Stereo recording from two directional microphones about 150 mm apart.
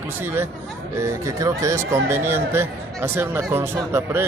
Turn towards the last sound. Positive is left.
turn(degrees=-15)  # may be behind; listen again after turning